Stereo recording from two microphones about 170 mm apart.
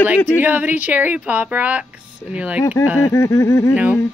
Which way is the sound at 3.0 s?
15° left (ahead or behind).